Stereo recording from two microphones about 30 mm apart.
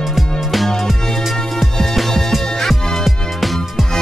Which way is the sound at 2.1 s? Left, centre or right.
Centre.